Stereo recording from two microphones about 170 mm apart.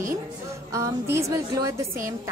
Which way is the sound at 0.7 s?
15° right (ahead or behind).